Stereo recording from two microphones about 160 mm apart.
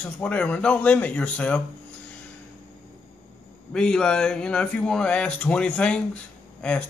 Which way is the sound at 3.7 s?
5° left (ahead or behind).